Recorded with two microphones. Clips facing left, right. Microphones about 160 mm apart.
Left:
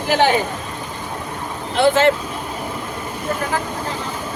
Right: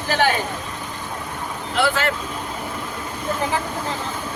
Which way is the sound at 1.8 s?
20° left (ahead or behind).